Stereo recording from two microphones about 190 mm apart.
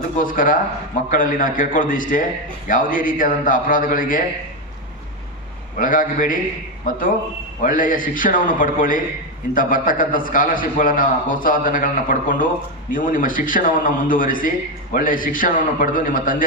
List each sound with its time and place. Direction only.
0.2 s a man's voice: 45° left (ahead or behind)
5.7 s a man's voice: 45° left (ahead or behind)